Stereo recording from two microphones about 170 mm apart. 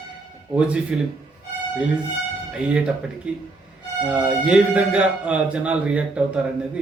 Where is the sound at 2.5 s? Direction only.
5° right (ahead or behind).